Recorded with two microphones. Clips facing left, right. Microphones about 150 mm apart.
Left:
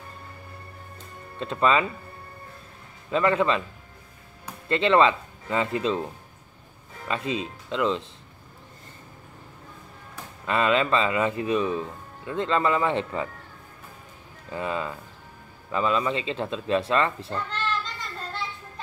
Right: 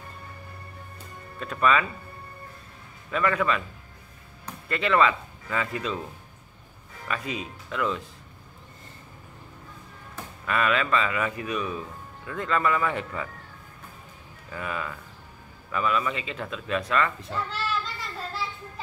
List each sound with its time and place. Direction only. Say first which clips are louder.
1.4 s speech: left 1 dB; 25° left (ahead or behind)
3.1 s speech: left 3 dB; 25° left (ahead or behind)
4.6 s speech: left 3 dB; 25° left (ahead or behind)
7.1 s speech: left 4 dB; 25° left (ahead or behind)
10.4 s speech: left 3 dB; 25° left (ahead or behind)
14.5 s speech: left 4 dB; 25° left (ahead or behind)
17.3 s children playing: left 1 dB; 5° right (ahead or behind)